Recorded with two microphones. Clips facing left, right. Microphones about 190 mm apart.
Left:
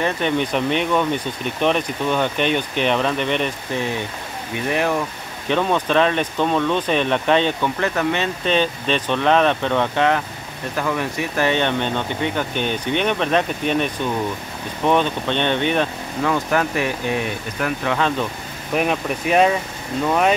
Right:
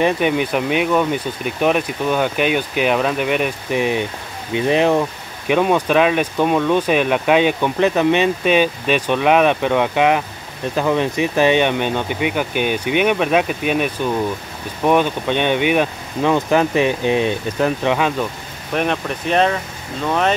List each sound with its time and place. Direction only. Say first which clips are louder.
0.0 s speech: right 4 dB; 10° right (ahead or behind)
5.5 s speech: right 3 dB; 10° right (ahead or behind)
18.8 s speech: even; 5° left (ahead or behind)